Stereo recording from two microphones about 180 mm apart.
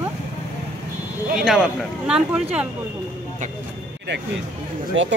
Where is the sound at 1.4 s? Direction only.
5° right (ahead or behind).